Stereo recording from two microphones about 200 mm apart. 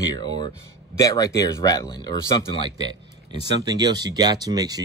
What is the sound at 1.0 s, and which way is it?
Speech, 15° left (ahead or behind).